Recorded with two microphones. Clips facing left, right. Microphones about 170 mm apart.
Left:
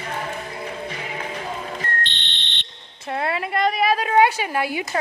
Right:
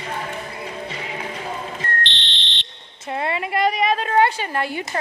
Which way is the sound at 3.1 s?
Centre (ahead or behind).